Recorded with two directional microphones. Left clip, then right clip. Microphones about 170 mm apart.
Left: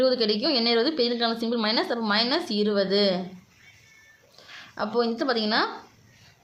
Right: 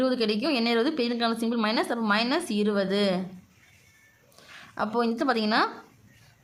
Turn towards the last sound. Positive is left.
turn(degrees=-30)  # may be behind; listen again after turning